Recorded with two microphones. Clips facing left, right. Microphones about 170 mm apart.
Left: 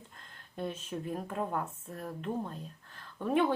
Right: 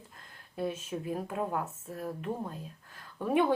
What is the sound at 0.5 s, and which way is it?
A woman's voice, 5° right (ahead or behind).